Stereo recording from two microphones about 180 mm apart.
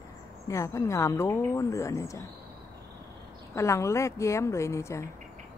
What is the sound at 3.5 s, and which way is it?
Speech, 15° left (ahead or behind).